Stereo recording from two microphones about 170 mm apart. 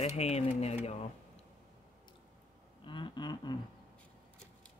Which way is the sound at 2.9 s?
30° left (ahead or behind).